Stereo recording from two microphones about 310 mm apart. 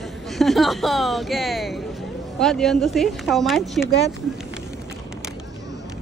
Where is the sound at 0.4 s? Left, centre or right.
Centre.